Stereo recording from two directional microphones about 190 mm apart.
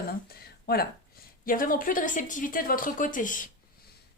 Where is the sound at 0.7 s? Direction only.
55° left (ahead or behind).